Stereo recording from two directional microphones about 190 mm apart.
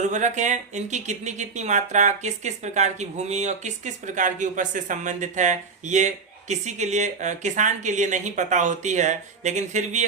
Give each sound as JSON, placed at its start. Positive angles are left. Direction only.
{"t": 0.0, "sound": "speech", "side_deg": -40}